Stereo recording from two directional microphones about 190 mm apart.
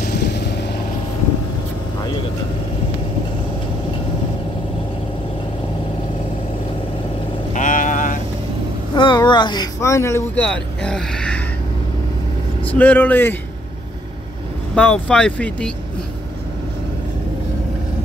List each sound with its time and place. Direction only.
0.0 s vehicle: 55° left (ahead or behind)
7.5 s vehicle: 40° left (ahead or behind)
8.9 s speech: 25° left (ahead or behind); by 11.4 s 5° left (ahead or behind)
12.6 s speech: 10° left (ahead or behind)
14.8 s speech: 5° left (ahead or behind)